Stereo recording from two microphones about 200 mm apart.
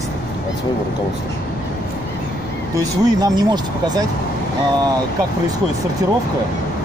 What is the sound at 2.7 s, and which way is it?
Speech, 20° right (ahead or behind).